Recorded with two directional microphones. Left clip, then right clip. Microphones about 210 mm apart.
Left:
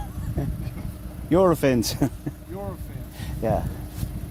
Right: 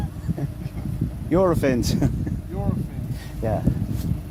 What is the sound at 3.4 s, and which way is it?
Speech, 25° left (ahead or behind).